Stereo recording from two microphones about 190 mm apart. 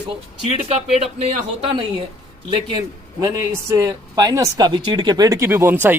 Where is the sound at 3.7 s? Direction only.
20° right (ahead or behind).